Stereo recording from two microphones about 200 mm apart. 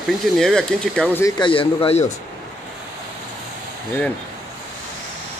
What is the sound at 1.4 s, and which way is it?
Speech, 25° left (ahead or behind).